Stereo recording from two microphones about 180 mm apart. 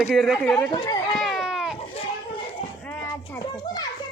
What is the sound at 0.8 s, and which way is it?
Run, 25° left (ahead or behind).